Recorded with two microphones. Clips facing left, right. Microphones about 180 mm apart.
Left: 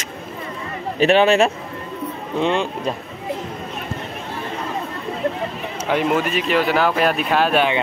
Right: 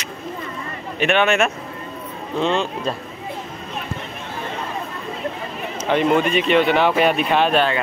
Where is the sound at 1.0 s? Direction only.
35° left (ahead or behind).